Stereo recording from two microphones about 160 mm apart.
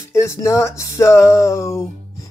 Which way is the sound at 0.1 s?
15° left (ahead or behind).